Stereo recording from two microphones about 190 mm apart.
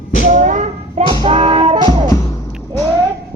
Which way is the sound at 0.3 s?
40° right (ahead or behind).